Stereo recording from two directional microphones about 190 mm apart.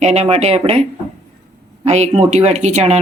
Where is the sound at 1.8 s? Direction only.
35° right (ahead or behind).